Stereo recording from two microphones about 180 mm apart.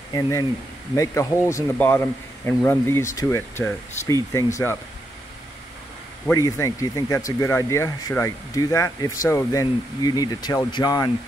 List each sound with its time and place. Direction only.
0.1 s speech: 20° left (ahead or behind)
6.3 s speech: 20° left (ahead or behind)